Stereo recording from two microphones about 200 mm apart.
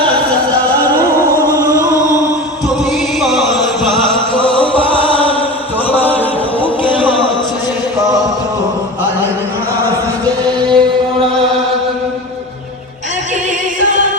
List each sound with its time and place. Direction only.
1.3 s music: 15° left (ahead or behind)
3.2 s chant: centre (ahead or behind)
4.4 s a sound: 5° left (ahead or behind)
5.9 s chant: 10° left (ahead or behind)
6.6 s music: 25° left (ahead or behind)
10.7 s chant: 20° right (ahead or behind)